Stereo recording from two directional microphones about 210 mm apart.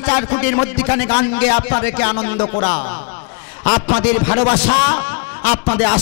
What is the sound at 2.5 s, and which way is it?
Speech, 25° left (ahead or behind).